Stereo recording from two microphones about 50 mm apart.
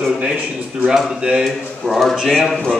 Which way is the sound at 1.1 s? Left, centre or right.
Right.